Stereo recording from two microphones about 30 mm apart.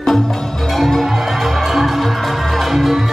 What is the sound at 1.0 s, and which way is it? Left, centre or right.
Music, centre.